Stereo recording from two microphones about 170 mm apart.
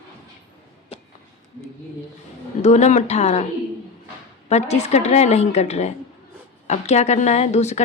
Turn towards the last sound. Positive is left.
turn(degrees=40)  # may be behind; listen again after turning